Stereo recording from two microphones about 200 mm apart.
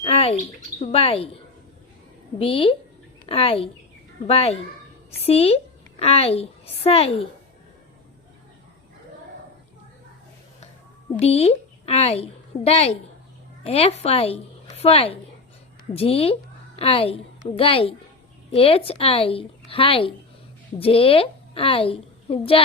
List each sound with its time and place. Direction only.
0.0 s chirp: 30° left (ahead or behind)
0.8 s a woman's voice: 30° left (ahead or behind)
2.4 s a woman's voice: 25° left (ahead or behind)
11.2 s a woman's voice: 30° left (ahead or behind)